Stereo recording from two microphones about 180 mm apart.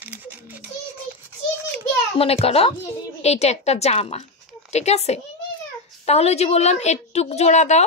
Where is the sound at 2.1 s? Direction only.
35° left (ahead or behind).